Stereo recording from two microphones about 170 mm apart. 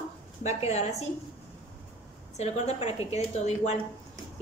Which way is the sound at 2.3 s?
40° left (ahead or behind).